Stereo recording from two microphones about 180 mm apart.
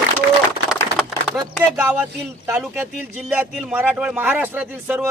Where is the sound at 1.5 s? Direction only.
10° right (ahead or behind).